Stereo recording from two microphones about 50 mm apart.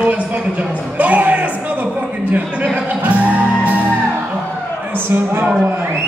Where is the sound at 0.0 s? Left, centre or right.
Right.